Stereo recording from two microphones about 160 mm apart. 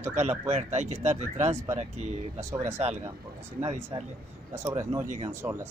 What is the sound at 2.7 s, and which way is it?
Speech, 45° right (ahead or behind).